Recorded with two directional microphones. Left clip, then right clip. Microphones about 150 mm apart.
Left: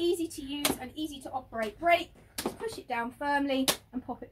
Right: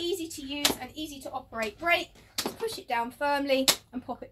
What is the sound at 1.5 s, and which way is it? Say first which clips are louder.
Speech: left 1 dB; 10° right (ahead or behind).